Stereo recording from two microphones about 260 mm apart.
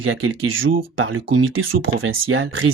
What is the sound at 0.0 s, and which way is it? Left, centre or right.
Speech, right.